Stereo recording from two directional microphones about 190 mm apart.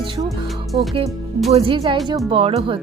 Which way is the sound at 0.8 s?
30° right (ahead or behind).